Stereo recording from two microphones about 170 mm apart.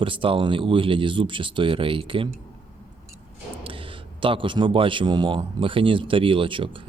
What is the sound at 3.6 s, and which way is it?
A man's voice, 30° right (ahead or behind).